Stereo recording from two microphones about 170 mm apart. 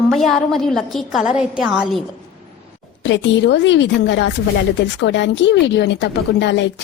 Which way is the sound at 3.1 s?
90° left.